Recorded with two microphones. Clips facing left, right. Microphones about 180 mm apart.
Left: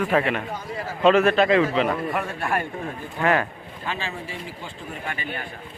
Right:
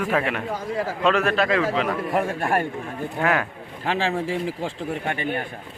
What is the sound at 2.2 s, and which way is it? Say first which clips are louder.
Speech: right 4 dB; 45° right (ahead or behind).